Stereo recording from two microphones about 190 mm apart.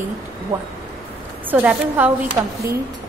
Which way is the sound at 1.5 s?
10° right (ahead or behind).